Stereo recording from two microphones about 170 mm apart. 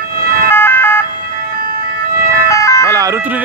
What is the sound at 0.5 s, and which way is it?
Siren, 15° left (ahead or behind).